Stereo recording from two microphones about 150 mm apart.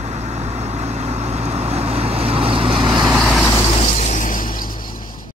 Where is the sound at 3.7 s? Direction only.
40° left (ahead or behind); by 4.7 s 70° left (ahead or behind).